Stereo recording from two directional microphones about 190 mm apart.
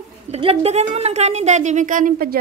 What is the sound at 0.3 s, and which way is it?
A woman's voice, 30° right (ahead or behind).